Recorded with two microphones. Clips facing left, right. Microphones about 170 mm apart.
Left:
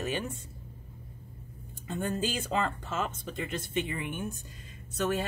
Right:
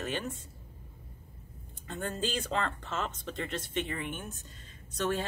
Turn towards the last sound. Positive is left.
turn(degrees=10)  # may be behind; listen again after turning